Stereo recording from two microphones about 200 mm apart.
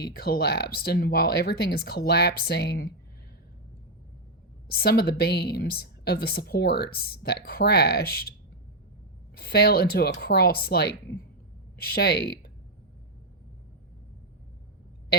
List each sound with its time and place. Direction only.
0.0 s a woman's voice: 50° left (ahead or behind)
4.7 s a woman's voice: 50° left (ahead or behind)
9.3 s a woman's voice: 50° left (ahead or behind)